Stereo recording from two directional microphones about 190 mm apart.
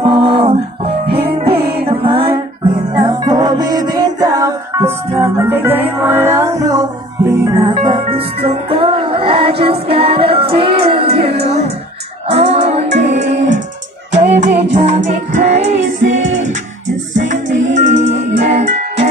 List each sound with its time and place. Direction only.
0.0 s music: 30° right (ahead or behind)
17.7 s music: 40° right (ahead or behind)